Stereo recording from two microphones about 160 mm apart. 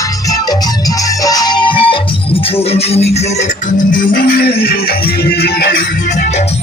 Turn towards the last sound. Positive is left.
turn(degrees=80)